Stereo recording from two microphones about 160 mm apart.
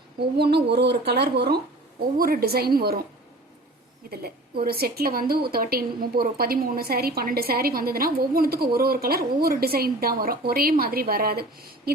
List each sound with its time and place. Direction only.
0.2 s speech: 90° right
2.1 s a woman's voice: 65° right (ahead or behind)
4.1 s a woman's voice: 70° right (ahead or behind)